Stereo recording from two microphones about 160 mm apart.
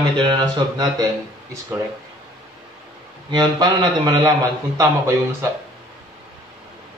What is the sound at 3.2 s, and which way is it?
Speech, 25° right (ahead or behind).